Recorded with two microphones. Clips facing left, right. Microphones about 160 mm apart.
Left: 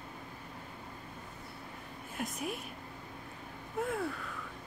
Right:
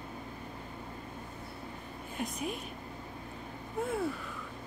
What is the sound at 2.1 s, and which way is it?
Speech, centre (ahead or behind).